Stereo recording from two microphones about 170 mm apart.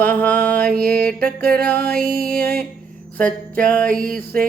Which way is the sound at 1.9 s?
5° left (ahead or behind).